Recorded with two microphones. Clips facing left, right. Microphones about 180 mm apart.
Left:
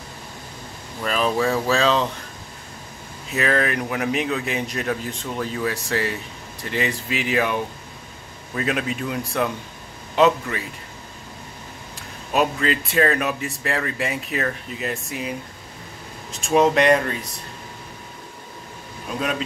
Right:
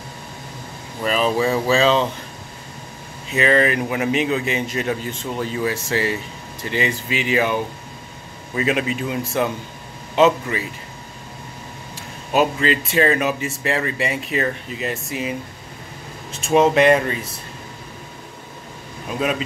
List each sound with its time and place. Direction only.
1.0 s a man's voice: centre (ahead or behind)
3.3 s a man's voice: centre (ahead or behind)
12.3 s a man's voice: centre (ahead or behind)
19.0 s speech: 5° right (ahead or behind)